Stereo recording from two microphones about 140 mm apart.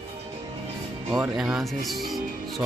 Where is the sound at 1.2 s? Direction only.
5° right (ahead or behind).